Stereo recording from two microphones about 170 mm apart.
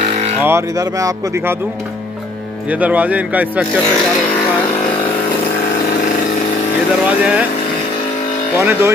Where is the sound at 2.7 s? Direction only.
10° right (ahead or behind).